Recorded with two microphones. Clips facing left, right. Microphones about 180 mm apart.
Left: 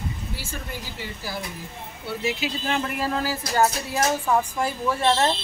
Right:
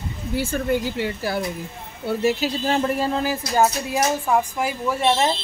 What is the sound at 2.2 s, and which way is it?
A woman's voice, 40° right (ahead or behind).